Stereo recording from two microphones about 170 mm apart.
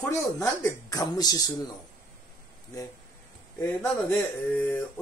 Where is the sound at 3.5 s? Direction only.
10° left (ahead or behind).